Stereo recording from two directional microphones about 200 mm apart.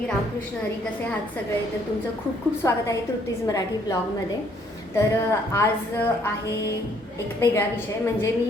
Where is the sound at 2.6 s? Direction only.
15° left (ahead or behind).